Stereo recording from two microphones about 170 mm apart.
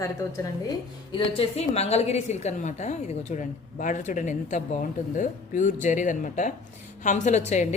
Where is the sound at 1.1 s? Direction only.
30° left (ahead or behind).